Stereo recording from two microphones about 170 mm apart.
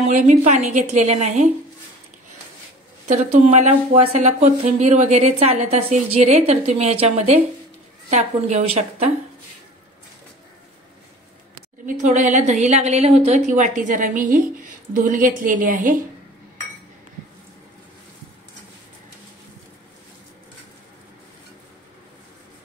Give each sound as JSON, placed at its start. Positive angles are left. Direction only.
{"t": 0.0, "sound": "a woman's voice", "side_deg": -45}
{"t": 3.1, "sound": "a woman's voice", "side_deg": -40}
{"t": 11.8, "sound": "a woman's voice", "side_deg": -45}